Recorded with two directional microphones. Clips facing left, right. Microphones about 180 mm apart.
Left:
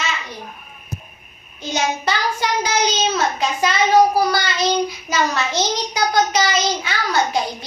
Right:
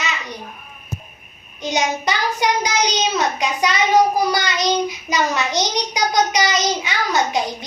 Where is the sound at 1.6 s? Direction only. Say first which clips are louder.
Right 1 dB; 20° right (ahead or behind).